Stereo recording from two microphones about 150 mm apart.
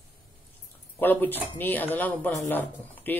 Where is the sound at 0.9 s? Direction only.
15° left (ahead or behind).